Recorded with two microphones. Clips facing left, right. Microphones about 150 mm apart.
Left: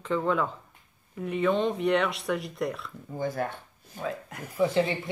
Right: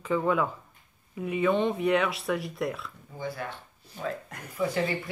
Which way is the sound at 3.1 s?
45° left (ahead or behind).